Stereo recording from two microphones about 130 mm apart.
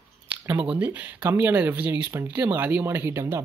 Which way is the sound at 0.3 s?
10° right (ahead or behind).